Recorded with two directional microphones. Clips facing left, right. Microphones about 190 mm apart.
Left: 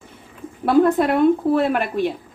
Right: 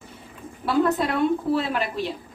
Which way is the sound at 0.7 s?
55° left (ahead or behind).